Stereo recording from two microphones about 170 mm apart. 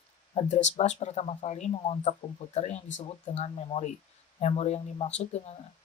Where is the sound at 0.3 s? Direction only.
45° left (ahead or behind).